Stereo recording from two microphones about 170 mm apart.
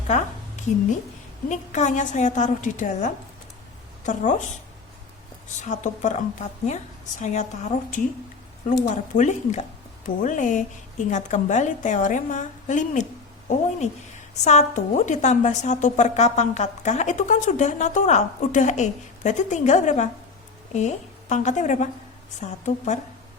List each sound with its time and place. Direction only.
0.1 s a woman's voice: 45° left (ahead or behind)
5.6 s a woman's voice: 45° left (ahead or behind)
9.1 s a woman's voice: 45° left (ahead or behind)